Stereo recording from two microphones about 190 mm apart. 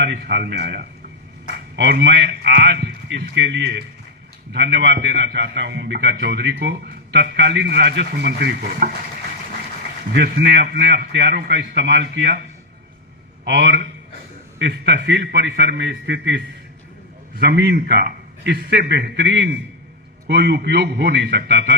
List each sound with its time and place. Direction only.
0.0 s a man's voice: 65° right (ahead or behind)
10.2 s a man's voice: 60° right (ahead or behind)
13.4 s a man's voice: 60° right (ahead or behind)
17.4 s a man's voice: 60° right (ahead or behind)